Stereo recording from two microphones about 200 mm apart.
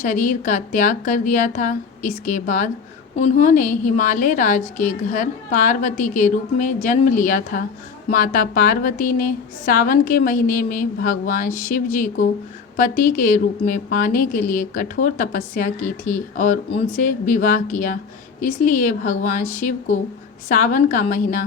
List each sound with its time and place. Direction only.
0.0 s a woman's voice: 40° left (ahead or behind)